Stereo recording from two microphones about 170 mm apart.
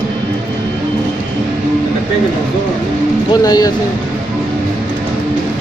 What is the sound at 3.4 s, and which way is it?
Speech, 25° left (ahead or behind).